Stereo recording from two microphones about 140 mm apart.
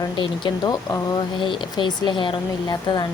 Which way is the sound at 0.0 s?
30° left (ahead or behind).